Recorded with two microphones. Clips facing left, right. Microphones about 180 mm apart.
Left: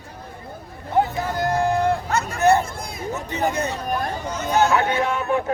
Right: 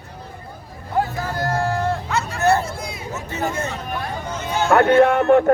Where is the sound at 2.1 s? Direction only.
45° left (ahead or behind).